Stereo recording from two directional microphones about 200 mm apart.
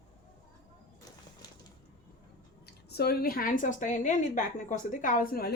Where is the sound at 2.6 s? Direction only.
55° left (ahead or behind).